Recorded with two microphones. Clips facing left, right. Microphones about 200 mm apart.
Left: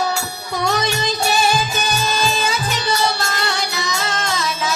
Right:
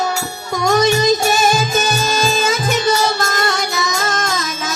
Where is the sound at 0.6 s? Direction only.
45° right (ahead or behind).